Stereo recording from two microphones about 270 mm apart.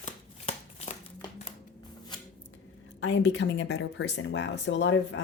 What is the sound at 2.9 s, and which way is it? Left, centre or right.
Speech, left.